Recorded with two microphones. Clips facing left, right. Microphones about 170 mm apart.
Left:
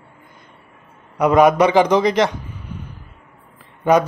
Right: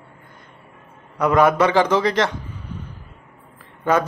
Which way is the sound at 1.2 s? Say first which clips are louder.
Left 3 dB; 15° left (ahead or behind).